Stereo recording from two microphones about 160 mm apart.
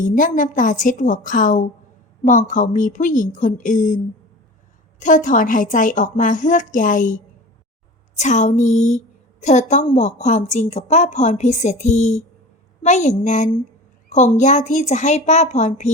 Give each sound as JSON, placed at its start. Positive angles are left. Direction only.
{"t": 0.0, "sound": "a woman's voice", "side_deg": 55}